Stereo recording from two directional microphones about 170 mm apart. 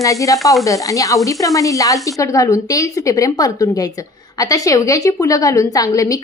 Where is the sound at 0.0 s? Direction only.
20° left (ahead or behind).